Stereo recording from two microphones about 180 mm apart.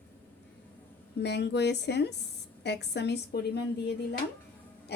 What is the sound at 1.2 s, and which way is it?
Speech, 70° left (ahead or behind).